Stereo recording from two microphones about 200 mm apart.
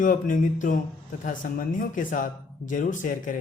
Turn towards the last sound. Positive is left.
turn(degrees=40)  # may be behind; listen again after turning